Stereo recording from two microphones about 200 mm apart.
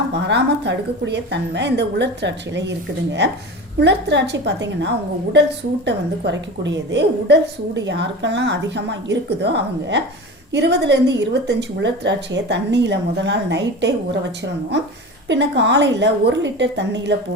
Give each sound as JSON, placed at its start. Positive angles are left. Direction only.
{"t": 0.1, "sound": "a woman's voice", "side_deg": -60}
{"t": 15.3, "sound": "a woman's voice", "side_deg": -60}